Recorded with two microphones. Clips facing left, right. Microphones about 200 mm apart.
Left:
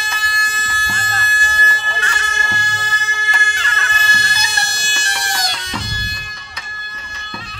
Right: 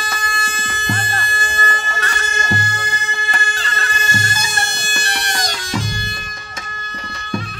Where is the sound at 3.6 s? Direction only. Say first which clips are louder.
Even; 35° right (ahead or behind); by 5.3 s 60° right (ahead or behind).